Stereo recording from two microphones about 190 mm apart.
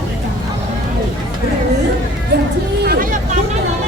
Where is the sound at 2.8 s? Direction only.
50° right (ahead or behind).